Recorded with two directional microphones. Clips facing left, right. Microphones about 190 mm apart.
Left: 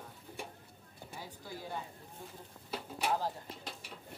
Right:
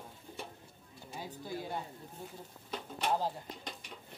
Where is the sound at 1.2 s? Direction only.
15° right (ahead or behind).